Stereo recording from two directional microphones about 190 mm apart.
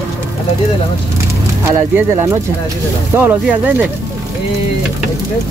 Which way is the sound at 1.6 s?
15° right (ahead or behind).